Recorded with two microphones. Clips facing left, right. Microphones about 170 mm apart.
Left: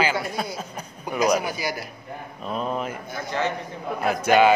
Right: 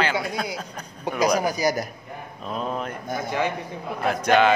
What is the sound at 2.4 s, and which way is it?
Speech, centre (ahead or behind).